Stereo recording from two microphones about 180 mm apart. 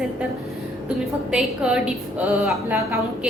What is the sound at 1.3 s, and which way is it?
A woman's voice, 5° right (ahead or behind).